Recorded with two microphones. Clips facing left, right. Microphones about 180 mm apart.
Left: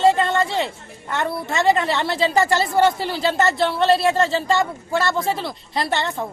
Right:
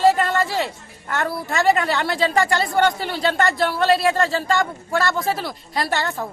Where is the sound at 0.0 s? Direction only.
25° left (ahead or behind).